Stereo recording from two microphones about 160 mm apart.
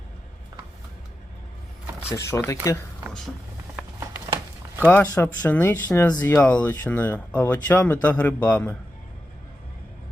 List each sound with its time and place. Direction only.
2.0 s speech: 15° left (ahead or behind)
4.9 s speech: 10° left (ahead or behind)